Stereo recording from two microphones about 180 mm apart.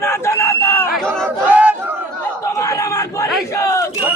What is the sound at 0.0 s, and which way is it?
Crowd, 15° left (ahead or behind).